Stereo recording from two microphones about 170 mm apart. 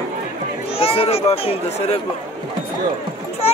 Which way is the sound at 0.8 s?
35° left (ahead or behind).